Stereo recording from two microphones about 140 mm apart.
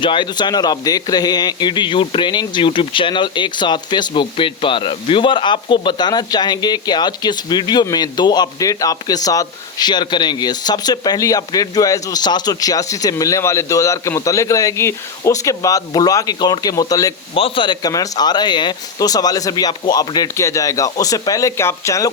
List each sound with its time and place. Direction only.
0.0 s a man's voice: 35° left (ahead or behind)
17.3 s a man's voice: 40° left (ahead or behind); by 22.1 s 20° left (ahead or behind)